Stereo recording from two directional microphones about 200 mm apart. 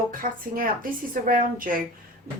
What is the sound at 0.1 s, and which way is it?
Speech, 45° right (ahead or behind).